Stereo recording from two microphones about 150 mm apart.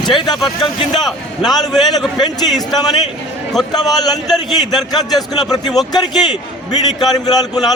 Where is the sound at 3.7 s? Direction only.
25° left (ahead or behind).